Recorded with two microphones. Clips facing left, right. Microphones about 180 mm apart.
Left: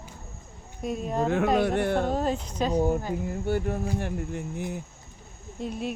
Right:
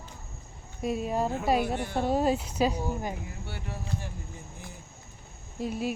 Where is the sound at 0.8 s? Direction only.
5° right (ahead or behind).